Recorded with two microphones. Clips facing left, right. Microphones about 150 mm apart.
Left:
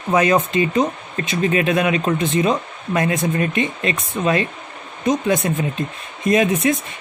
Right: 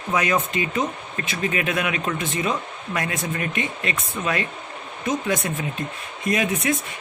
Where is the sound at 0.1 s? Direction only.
25° left (ahead or behind).